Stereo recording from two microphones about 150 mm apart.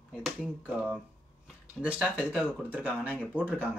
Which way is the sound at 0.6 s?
10° right (ahead or behind).